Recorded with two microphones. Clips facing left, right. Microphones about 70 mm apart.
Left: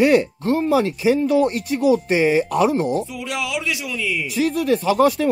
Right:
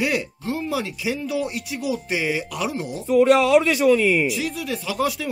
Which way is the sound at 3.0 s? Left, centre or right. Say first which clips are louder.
Right 11 dB; right.